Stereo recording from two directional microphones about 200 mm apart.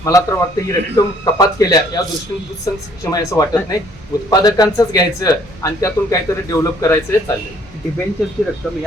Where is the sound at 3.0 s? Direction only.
20° left (ahead or behind).